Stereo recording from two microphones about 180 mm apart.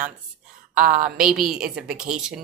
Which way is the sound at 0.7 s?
50° right (ahead or behind).